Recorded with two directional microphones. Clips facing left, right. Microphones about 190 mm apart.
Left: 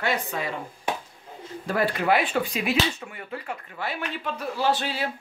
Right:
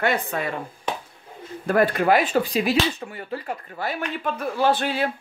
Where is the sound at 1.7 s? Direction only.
50° right (ahead or behind).